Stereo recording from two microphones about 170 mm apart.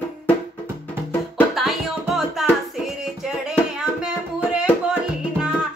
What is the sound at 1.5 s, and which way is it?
Music, centre (ahead or behind).